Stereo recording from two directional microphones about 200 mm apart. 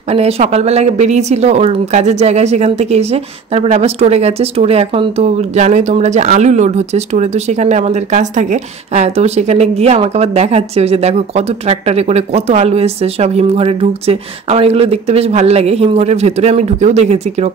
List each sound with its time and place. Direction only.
0.1 s a woman's voice: 30° right (ahead or behind)